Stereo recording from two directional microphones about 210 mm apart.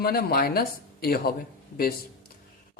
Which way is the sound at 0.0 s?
45° left (ahead or behind).